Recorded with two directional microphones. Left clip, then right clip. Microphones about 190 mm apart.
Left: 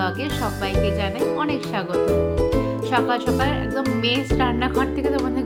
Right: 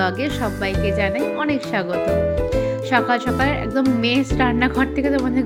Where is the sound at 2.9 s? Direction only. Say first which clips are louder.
Right 2 dB; 20° right (ahead or behind).